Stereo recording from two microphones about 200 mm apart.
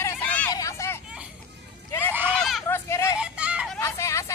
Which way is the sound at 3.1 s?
5° right (ahead or behind).